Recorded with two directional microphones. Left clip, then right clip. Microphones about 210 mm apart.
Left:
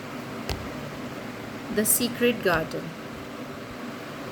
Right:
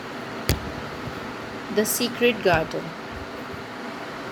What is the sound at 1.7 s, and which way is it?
Speech, 20° left (ahead or behind).